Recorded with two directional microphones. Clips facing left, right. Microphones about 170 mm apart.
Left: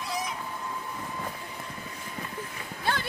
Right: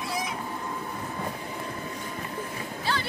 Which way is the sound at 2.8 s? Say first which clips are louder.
Even; 55° left (ahead or behind).